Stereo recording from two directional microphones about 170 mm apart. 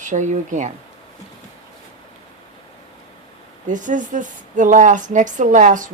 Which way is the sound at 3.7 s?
50° right (ahead or behind).